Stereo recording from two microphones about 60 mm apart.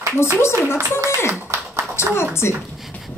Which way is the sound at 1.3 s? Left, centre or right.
Right.